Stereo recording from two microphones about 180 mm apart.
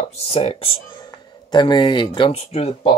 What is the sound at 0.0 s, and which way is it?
Speech, 35° left (ahead or behind).